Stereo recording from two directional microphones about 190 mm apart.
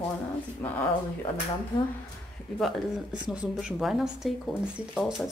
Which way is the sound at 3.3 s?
5° right (ahead or behind).